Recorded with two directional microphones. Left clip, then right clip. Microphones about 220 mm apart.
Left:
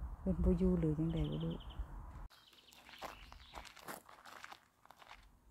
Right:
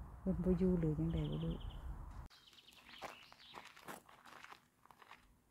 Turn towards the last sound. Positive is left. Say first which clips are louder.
# left 3 dB
turn(degrees=40)  # may be behind; listen again after turning